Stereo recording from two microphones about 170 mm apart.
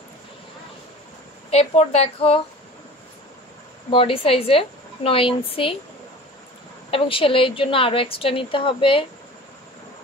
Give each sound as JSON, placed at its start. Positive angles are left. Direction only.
{"t": 1.5, "sound": "a woman's voice", "side_deg": 35}
{"t": 3.9, "sound": "a woman's voice", "side_deg": 35}
{"t": 6.9, "sound": "a woman's voice", "side_deg": 30}